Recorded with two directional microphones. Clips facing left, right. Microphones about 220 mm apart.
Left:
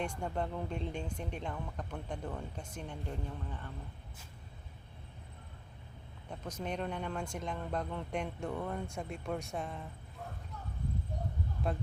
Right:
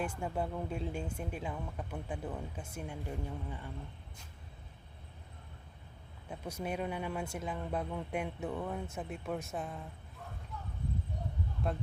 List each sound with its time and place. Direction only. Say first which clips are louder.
0.0 s speech: even; 5° right (ahead or behind)
6.2 s speech: right 1 dB; 10° right (ahead or behind)
11.6 s speech: even; centre (ahead or behind)